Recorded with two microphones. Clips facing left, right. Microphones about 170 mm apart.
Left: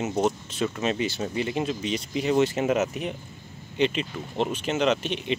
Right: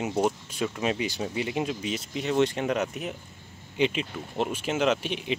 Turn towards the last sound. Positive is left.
turn(degrees=-10)  # may be behind; listen again after turning